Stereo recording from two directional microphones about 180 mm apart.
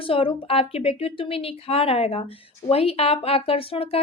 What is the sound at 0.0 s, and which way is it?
A woman's voice, 30° left (ahead or behind).